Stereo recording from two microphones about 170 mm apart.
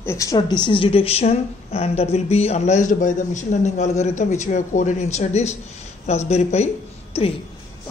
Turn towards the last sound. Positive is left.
turn(degrees=40)  # may be behind; listen again after turning